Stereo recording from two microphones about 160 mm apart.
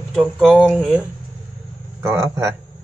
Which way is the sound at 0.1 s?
Centre (ahead or behind).